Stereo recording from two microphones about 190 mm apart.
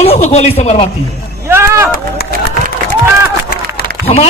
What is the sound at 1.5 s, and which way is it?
Speech, 15° right (ahead or behind).